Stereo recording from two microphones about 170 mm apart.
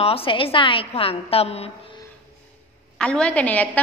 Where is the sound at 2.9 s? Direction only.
5° left (ahead or behind).